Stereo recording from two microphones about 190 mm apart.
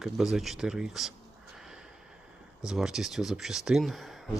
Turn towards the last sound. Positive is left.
turn(degrees=0)  # may be behind; listen again after turning